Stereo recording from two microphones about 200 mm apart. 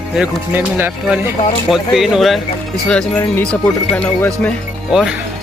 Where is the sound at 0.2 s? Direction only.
10° right (ahead or behind); by 4.5 s 5° left (ahead or behind).